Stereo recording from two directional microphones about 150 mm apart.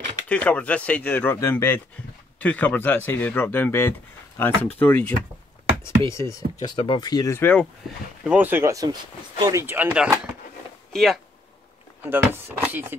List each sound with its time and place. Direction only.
0.3 s speech: 10° left (ahead or behind)
8.2 s speech: 10° right (ahead or behind)
10.9 s speech: centre (ahead or behind)
12.0 s speech: 15° right (ahead or behind)